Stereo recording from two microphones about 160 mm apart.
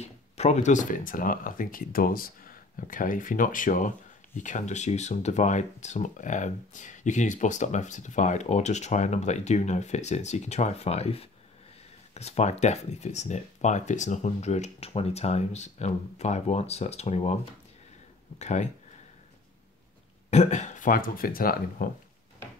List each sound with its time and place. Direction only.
0.0 s speech: 45° left (ahead or behind)
18.4 s speech: 45° left (ahead or behind)
20.2 s speech: 45° left (ahead or behind); by 21.8 s 65° left (ahead or behind)